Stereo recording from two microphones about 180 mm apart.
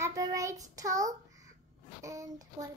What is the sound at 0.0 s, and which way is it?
Child singing, 20° right (ahead or behind).